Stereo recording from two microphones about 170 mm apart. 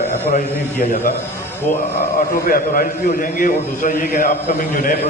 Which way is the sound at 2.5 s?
55° left (ahead or behind).